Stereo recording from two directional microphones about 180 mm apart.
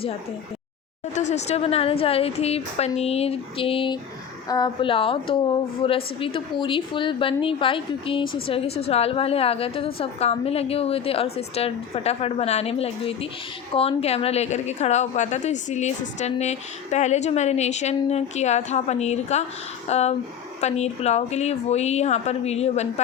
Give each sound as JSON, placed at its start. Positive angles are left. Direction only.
{"t": 1.1, "sound": "a woman's voice", "side_deg": 40}